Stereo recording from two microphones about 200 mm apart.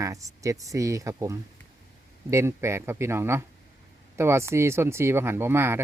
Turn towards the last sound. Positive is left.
turn(degrees=-10)  # may be behind; listen again after turning